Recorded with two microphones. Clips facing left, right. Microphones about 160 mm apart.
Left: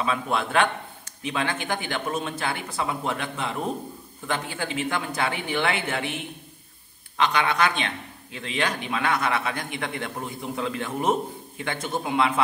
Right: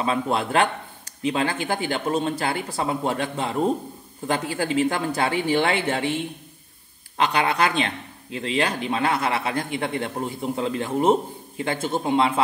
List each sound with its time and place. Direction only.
0.0 s speech: 35° right (ahead or behind)
7.2 s a man's voice: 35° right (ahead or behind)